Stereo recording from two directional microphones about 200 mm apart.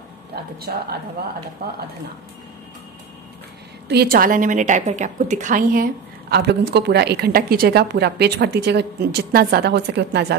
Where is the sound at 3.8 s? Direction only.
50° right (ahead or behind).